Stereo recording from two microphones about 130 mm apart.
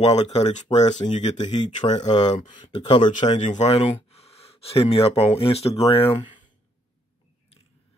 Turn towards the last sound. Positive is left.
turn(degrees=50)  # may be behind; listen again after turning